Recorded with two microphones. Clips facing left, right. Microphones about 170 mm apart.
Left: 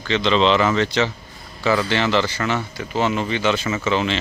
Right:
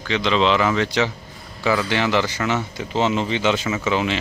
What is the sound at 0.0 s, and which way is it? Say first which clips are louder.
Speech: left 2 dB; 10° right (ahead or behind).